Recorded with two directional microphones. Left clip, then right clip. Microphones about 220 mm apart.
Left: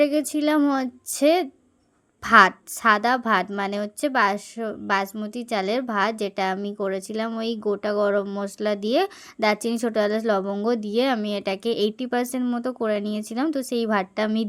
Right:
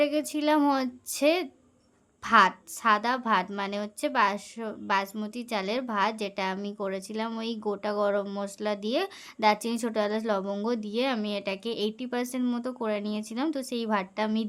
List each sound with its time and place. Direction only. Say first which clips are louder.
0.0 s a woman's voice: left 5 dB; 20° left (ahead or behind)